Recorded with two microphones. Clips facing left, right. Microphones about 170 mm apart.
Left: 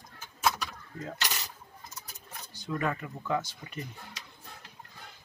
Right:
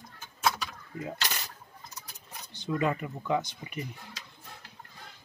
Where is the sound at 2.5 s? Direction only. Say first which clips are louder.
Right 3 dB; 20° right (ahead or behind).